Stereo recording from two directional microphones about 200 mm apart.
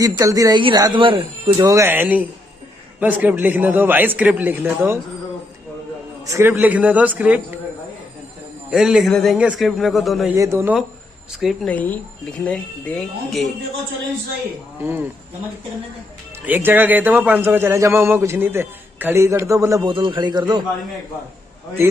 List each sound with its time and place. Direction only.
0.0 s a man's voice: 15° right (ahead or behind)
6.2 s a man's voice: 15° right (ahead or behind)
8.6 s a man's voice: 5° right (ahead or behind)
10.3 s a man's voice: 15° right (ahead or behind)
11.4 s speech: 5° left (ahead or behind)
16.4 s a man's voice: 10° right (ahead or behind)